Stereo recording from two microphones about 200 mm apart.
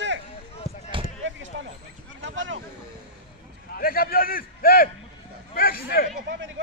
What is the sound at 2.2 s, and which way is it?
Speech, 70° right (ahead or behind).